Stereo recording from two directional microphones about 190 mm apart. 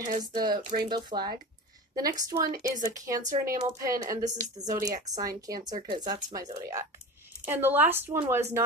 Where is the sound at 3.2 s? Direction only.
45° right (ahead or behind).